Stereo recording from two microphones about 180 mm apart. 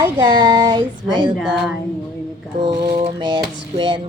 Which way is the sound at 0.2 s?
25° right (ahead or behind).